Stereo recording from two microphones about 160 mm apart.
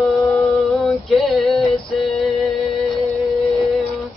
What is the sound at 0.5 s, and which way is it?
Music, centre (ahead or behind).